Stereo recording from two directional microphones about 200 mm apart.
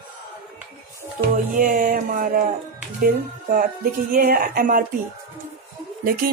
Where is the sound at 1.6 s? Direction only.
45° right (ahead or behind).